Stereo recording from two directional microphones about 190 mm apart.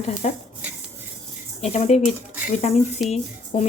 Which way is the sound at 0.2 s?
40° left (ahead or behind).